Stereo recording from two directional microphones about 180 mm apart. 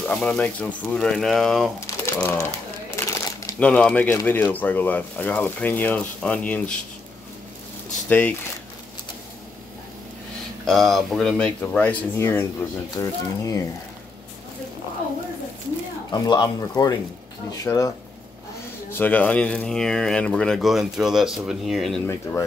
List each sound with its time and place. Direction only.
0.0 s speech: 10° left (ahead or behind)
2.1 s speech: 15° left (ahead or behind)
3.1 s crumpling: 20° left (ahead or behind)
3.5 s speech: 10° left (ahead or behind)
8.1 s speech: 10° left (ahead or behind)
10.7 s speech: centre (ahead or behind); by 13.6 s 20° left (ahead or behind)
16.1 s speech: 25° left (ahead or behind); by 22.0 s centre (ahead or behind)